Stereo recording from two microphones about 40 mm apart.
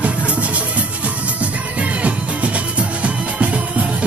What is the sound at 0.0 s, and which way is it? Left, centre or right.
Music, right.